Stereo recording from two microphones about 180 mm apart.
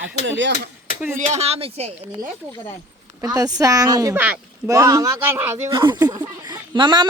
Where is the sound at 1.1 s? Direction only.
40° right (ahead or behind).